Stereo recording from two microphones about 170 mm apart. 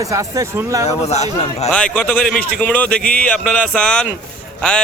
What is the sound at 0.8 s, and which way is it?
Speech, 40° left (ahead or behind).